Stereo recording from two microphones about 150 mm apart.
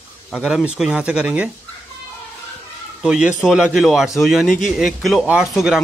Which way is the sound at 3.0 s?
5° right (ahead or behind).